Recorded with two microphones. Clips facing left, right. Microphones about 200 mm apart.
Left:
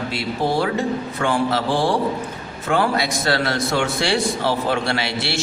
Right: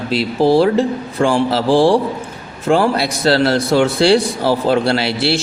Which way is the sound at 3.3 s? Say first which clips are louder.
Right 9 dB; 30° right (ahead or behind).